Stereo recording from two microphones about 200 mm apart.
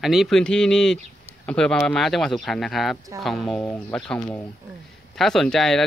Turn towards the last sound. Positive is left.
turn(degrees=0)  # may be behind; listen again after turning